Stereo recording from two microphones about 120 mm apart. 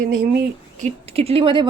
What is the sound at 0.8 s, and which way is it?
Speech, 55° right (ahead or behind).